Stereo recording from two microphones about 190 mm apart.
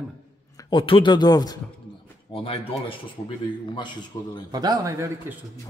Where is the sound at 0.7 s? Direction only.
25° left (ahead or behind).